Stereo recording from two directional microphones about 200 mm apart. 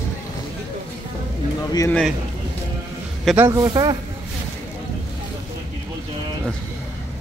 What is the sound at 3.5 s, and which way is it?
Speech, 20° right (ahead or behind).